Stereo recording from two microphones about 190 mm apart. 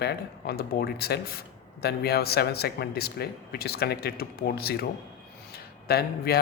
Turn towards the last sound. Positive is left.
turn(degrees=55)  # may be behind; listen again after turning